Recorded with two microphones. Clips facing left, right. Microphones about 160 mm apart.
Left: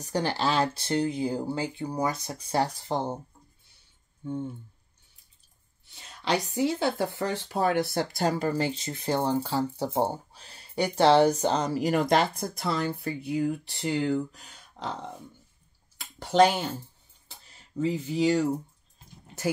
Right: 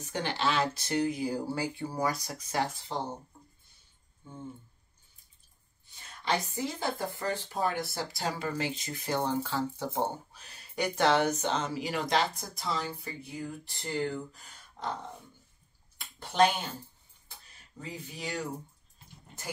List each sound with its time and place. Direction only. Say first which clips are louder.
0.0 s speech: left 4 dB; 35° left (ahead or behind)
2.9 s speech: left 8 dB; 55° left (ahead or behind)
5.9 s speech: left 3 dB; 75° left (ahead or behind)
16.0 s a sound: left 5 dB; 90° left
17.7 s speech: left 15 dB; 90° left